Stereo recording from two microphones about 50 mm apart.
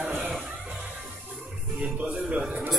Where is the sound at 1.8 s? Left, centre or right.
Right.